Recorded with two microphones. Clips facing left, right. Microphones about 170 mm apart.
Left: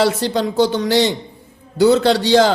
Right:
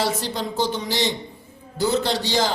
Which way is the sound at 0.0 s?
70° left (ahead or behind).